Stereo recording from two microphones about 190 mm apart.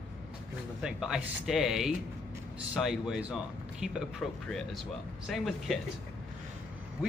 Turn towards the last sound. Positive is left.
turn(degrees=0)  # may be behind; listen again after turning